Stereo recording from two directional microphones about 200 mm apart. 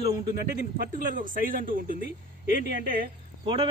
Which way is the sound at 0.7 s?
40° right (ahead or behind).